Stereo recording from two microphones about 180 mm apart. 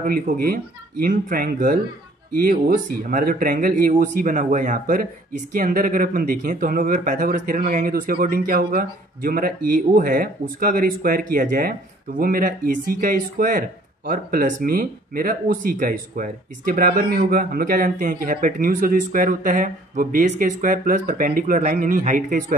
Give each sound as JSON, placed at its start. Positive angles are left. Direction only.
{"t": 0.0, "sound": "speech", "side_deg": -50}